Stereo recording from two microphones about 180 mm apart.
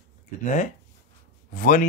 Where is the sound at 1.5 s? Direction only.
50° left (ahead or behind).